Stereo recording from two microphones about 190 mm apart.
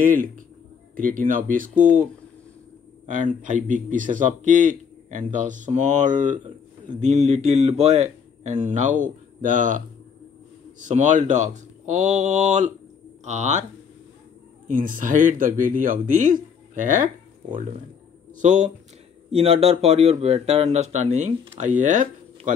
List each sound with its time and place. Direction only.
0.0 s speech: 45° right (ahead or behind)
3.1 s a man's voice: 40° right (ahead or behind)
14.7 s a man's voice: 45° right (ahead or behind)